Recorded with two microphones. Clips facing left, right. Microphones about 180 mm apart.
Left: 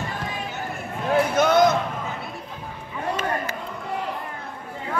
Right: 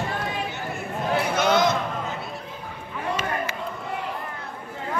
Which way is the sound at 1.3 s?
50° left (ahead or behind).